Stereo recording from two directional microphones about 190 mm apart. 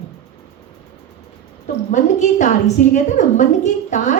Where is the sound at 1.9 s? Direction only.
40° left (ahead or behind).